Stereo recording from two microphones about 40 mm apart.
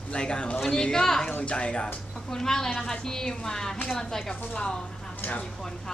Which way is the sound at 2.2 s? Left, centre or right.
Centre.